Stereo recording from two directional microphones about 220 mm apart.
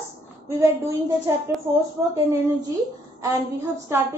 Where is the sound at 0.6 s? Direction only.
15° right (ahead or behind).